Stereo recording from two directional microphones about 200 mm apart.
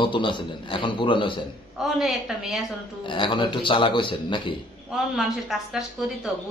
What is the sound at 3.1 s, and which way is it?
A man's voice, 25° left (ahead or behind).